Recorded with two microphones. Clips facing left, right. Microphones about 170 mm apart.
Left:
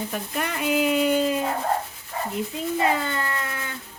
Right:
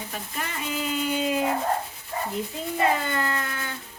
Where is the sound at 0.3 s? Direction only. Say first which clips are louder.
Left 8 dB; 65° left (ahead or behind).